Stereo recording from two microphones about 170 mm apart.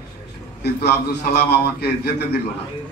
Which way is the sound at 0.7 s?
75° left (ahead or behind).